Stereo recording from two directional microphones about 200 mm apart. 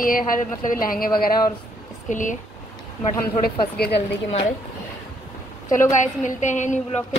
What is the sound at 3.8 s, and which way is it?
Speech, 55° left (ahead or behind).